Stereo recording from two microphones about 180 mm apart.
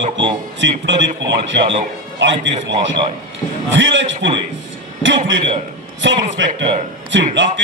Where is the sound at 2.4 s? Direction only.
90° right.